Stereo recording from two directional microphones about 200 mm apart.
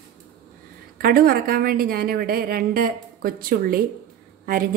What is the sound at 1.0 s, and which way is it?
Speech, 45° right (ahead or behind).